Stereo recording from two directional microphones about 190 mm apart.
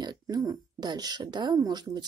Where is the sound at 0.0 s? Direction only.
20° right (ahead or behind).